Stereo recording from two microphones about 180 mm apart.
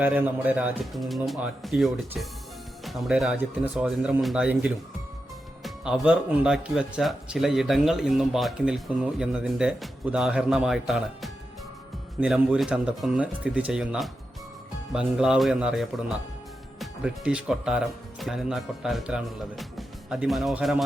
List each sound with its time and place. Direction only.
0.0 s speech: 10° right (ahead or behind)